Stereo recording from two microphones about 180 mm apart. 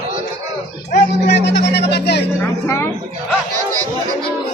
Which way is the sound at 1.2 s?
70° left (ahead or behind).